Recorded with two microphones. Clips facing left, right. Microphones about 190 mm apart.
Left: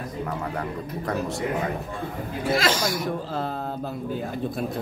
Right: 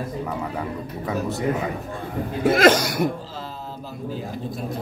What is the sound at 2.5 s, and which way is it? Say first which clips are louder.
Speech: right 6 dB; 55° right (ahead or behind).